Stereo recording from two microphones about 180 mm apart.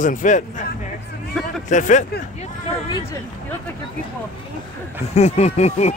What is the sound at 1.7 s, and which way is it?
Speech, 45° left (ahead or behind).